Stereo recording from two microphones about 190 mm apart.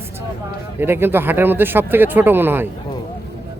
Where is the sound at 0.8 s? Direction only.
10° right (ahead or behind).